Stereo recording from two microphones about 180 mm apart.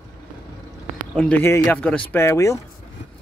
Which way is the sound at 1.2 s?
10° left (ahead or behind).